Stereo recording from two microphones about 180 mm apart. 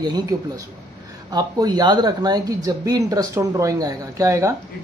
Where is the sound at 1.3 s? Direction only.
20° right (ahead or behind).